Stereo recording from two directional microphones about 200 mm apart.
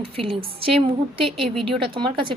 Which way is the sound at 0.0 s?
30° right (ahead or behind).